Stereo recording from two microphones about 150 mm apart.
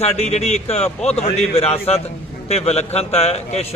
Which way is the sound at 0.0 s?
50° left (ahead or behind).